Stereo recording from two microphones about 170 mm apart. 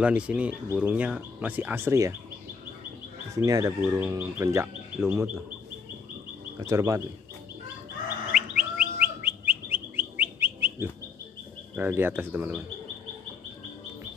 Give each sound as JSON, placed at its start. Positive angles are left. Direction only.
{"t": 0.0, "sound": "speech", "side_deg": -5}
{"t": 3.4, "sound": "speech", "side_deg": -20}
{"t": 3.8, "sound": "speech", "side_deg": -5}
{"t": 6.6, "sound": "speech", "side_deg": -20}
{"t": 8.3, "sound": "bird", "side_deg": -5}
{"t": 11.7, "sound": "speech", "side_deg": -10}